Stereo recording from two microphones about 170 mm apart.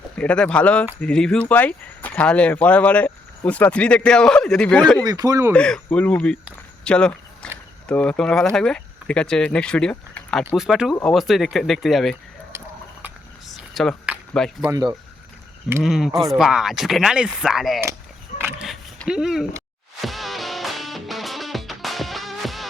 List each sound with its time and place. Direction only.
0.2 s speech: 5° left (ahead or behind)
5.0 s speech: 20° right (ahead or behind)
5.5 s speech: 5° left (ahead or behind)
6.8 s walk: 5° left (ahead or behind)
7.9 s speech: 5° left (ahead or behind)
12.5 s a sound: 10° right (ahead or behind)
13.5 s a sound: centre (ahead or behind)
15.8 s speech: centre (ahead or behind)
18.3 s a sound: 10° right (ahead or behind)
20.0 s music: centre (ahead or behind)